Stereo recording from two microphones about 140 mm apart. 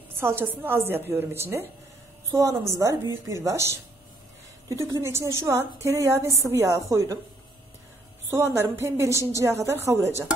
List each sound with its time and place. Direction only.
0.2 s a woman's voice: 15° right (ahead or behind)
8.4 s a woman's voice: 20° right (ahead or behind)